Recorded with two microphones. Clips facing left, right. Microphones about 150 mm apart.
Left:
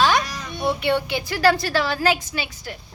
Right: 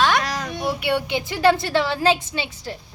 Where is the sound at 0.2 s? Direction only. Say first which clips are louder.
Right 3 dB; 90° right.